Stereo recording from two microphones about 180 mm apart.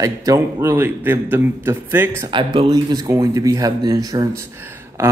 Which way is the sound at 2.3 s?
25° right (ahead or behind).